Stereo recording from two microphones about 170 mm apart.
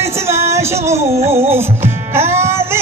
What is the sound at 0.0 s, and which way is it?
Music, 15° right (ahead or behind).